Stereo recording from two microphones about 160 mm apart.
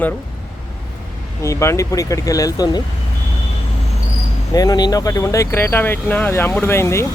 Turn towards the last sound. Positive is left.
turn(degrees=15)  # may be behind; listen again after turning